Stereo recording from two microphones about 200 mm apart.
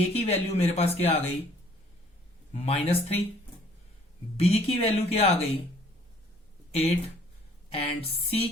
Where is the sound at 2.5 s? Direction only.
30° left (ahead or behind).